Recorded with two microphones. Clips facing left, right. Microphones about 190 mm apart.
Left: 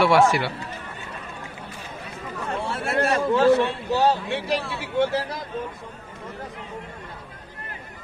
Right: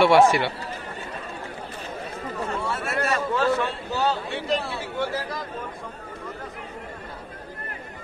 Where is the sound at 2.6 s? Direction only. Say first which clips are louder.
Left 6 dB; 60° left (ahead or behind).